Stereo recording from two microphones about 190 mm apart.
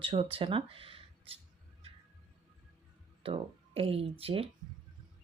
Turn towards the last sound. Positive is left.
turn(degrees=-30)  # may be behind; listen again after turning